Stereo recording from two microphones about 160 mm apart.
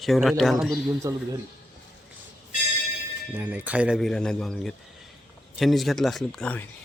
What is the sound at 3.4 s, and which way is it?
Speech, 10° right (ahead or behind).